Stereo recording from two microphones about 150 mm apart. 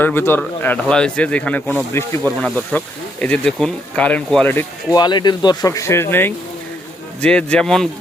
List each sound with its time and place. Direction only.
0.0 s speech: 15° left (ahead or behind)
4.9 s a man's voice: 30° left (ahead or behind); by 7.9 s 5° left (ahead or behind)